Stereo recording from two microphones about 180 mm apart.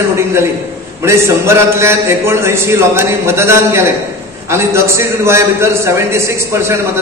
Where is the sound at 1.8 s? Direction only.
15° right (ahead or behind).